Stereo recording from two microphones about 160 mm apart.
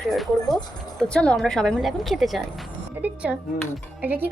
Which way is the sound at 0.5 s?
5° left (ahead or behind).